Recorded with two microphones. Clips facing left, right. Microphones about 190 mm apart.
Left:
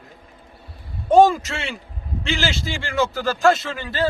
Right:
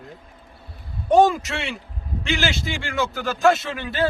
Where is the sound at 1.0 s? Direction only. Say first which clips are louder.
Left 2 dB; centre (ahead or behind).